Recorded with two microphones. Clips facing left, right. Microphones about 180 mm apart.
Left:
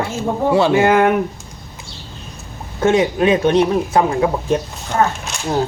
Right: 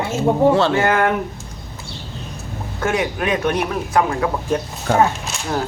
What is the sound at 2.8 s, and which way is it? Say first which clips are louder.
Speech: left 7 dB; 25° left (ahead or behind).